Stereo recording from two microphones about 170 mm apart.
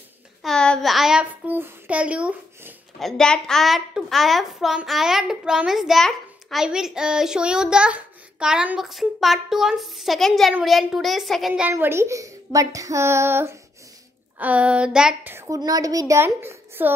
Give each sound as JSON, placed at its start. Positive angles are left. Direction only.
{"t": 0.4, "sound": "a child's voice", "side_deg": 5}
{"t": 11.7, "sound": "a woman's voice", "side_deg": -15}